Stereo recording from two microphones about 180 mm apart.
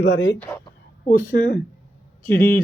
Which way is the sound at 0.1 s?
90° left.